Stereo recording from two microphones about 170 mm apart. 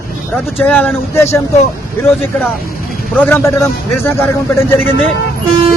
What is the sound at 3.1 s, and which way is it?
A man's voice, 10° left (ahead or behind).